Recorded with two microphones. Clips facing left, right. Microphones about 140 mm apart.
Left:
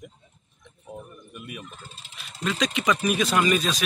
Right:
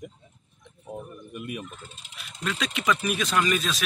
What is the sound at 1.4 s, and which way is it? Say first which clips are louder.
Speech: right 4 dB; 5° right (ahead or behind).